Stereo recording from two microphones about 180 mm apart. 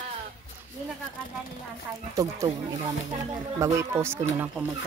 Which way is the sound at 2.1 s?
20° right (ahead or behind).